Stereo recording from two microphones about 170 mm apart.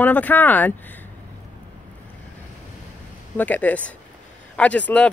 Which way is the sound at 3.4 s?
10° left (ahead or behind).